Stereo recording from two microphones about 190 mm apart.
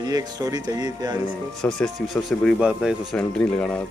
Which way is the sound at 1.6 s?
Centre (ahead or behind).